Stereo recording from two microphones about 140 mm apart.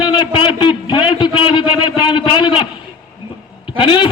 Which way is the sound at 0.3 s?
35° left (ahead or behind).